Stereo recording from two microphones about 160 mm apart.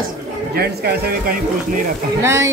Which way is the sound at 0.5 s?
75° right (ahead or behind).